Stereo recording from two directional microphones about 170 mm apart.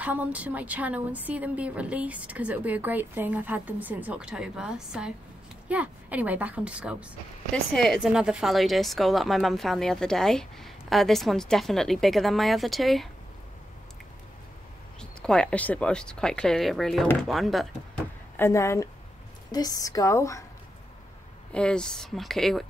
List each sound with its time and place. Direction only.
0.0 s a woman's voice: 10° right (ahead or behind)
15.0 s a woman's voice: 5° left (ahead or behind)
18.3 s a woman's voice: 15° left (ahead or behind)
21.5 s a woman's voice: 5° left (ahead or behind)